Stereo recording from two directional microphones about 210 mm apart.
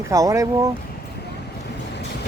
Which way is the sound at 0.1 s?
15° right (ahead or behind).